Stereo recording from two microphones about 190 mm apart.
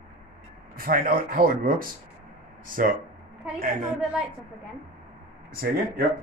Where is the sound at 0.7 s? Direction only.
50° right (ahead or behind).